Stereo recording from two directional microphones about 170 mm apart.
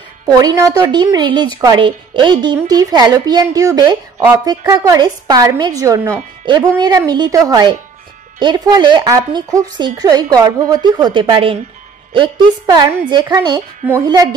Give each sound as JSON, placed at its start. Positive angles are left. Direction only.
{"t": 0.3, "sound": "a woman's voice", "side_deg": -25}